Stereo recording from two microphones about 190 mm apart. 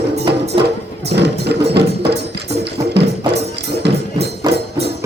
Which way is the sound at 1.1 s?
60° right (ahead or behind).